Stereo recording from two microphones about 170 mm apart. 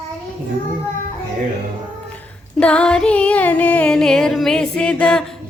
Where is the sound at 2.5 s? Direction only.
5° left (ahead or behind).